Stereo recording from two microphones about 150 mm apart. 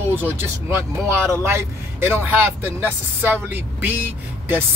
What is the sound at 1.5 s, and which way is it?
Speech, 15° right (ahead or behind).